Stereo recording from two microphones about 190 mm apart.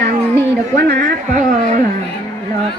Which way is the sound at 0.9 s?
45° right (ahead or behind).